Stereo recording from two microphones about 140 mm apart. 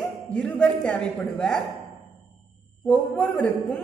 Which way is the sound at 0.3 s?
5° left (ahead or behind).